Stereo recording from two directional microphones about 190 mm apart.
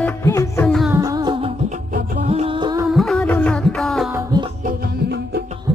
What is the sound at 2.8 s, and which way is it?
Music, centre (ahead or behind).